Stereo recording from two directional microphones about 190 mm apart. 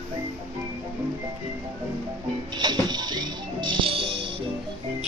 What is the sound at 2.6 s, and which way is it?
Music, 20° right (ahead or behind).